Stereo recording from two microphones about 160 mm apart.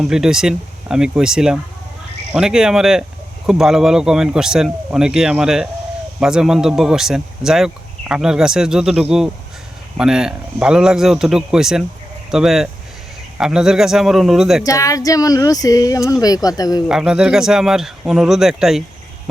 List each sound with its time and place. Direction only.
0.0 s speech: 5° right (ahead or behind)
14.6 s speech: 20° left (ahead or behind)
16.9 s speech: 5° right (ahead or behind)